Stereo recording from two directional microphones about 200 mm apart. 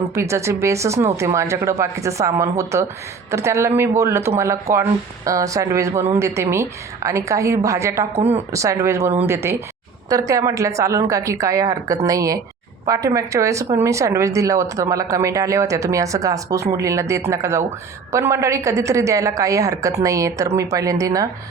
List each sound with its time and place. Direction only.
0.1 s a woman's voice: 15° right (ahead or behind)